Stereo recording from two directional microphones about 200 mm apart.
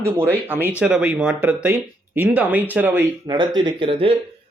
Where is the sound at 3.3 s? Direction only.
25° right (ahead or behind).